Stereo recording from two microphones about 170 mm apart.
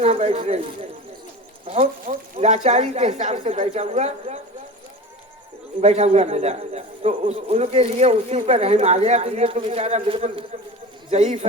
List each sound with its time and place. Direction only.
0.0 s a man's voice: 40° right (ahead or behind)
2.0 s a man's voice: 40° right (ahead or behind)
5.8 s a man's voice: 40° right (ahead or behind)